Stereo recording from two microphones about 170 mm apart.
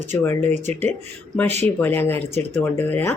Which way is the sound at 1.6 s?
10° left (ahead or behind).